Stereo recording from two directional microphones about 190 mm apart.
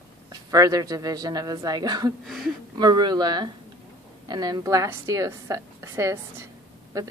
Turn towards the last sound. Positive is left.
turn(degrees=-15)  # may be behind; listen again after turning